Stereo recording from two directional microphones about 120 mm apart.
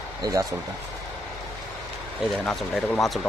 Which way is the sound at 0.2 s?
30° right (ahead or behind).